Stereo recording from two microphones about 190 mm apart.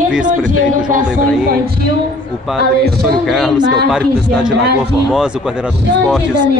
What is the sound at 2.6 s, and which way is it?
Speech, 55° right (ahead or behind).